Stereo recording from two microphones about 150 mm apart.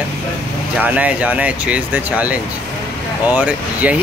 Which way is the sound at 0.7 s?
10° right (ahead or behind).